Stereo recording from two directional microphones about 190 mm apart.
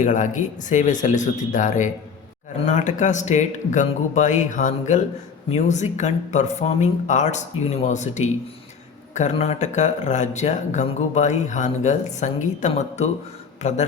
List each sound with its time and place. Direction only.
0.0 s speech: 40° left (ahead or behind)